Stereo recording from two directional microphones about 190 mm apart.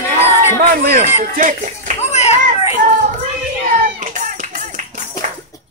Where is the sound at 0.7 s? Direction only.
45° right (ahead or behind).